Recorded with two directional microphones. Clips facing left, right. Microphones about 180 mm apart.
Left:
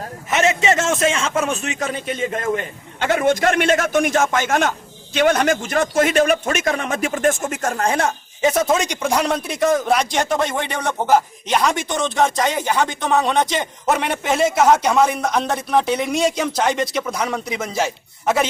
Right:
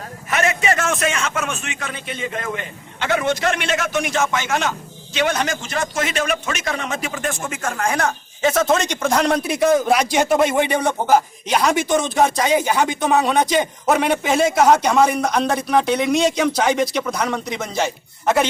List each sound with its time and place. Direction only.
0.3 s a man's voice: 25° left (ahead or behind); by 18.4 s 5° left (ahead or behind)